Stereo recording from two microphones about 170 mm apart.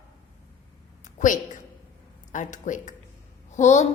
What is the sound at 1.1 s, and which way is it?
A woman's voice, 50° left (ahead or behind).